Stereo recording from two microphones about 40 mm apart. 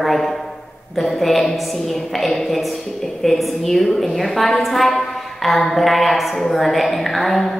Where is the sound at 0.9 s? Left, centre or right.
Centre.